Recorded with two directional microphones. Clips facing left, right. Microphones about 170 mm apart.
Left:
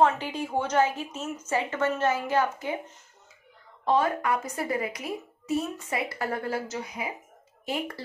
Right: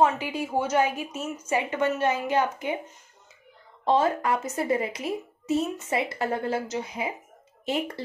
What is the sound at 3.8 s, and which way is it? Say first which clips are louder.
A woman's voice: right 2 dB; 30° right (ahead or behind).